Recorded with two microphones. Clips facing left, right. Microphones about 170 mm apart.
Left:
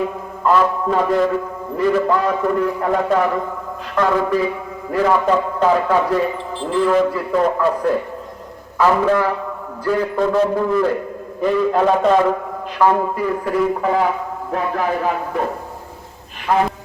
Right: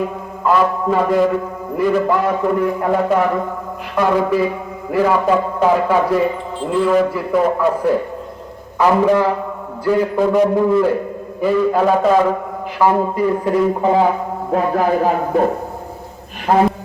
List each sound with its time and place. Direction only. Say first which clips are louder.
0.4 s a man's voice: right 1 dB; 5° right (ahead or behind)
12.8 s speech: right 2 dB; 15° right (ahead or behind)
14.5 s speech: right 5 dB; 35° right (ahead or behind)
16.5 s speech: right 3 dB; 40° right (ahead or behind)